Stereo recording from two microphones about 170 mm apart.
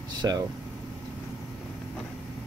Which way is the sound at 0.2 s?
20° right (ahead or behind).